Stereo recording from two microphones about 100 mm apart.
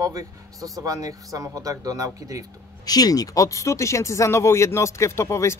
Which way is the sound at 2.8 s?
40° left (ahead or behind).